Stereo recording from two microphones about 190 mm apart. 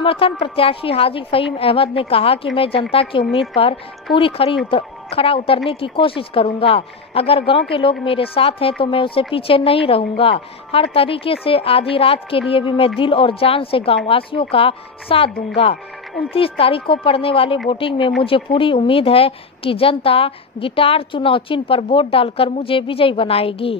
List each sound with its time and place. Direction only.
0.0 s a woman's voice: 30° left (ahead or behind)